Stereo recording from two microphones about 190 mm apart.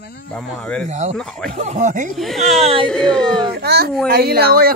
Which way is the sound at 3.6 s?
55° right (ahead or behind).